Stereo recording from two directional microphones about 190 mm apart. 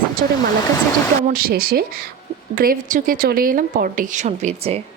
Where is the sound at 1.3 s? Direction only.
50° right (ahead or behind); by 4.8 s 35° right (ahead or behind).